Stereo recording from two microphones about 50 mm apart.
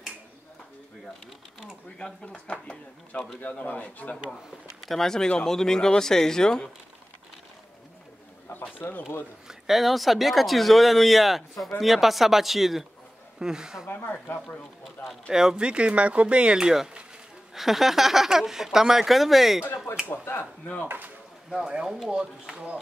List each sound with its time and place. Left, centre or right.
2.0 s speech: centre
3.1 s a man's voice: left
4.8 s speech: centre
8.7 s a man's voice: left
9.5 s speech: centre
13.8 s speech: left
15.2 s speech: centre
20.1 s speech: left
20.6 s a man's voice: left
21.5 s speech: centre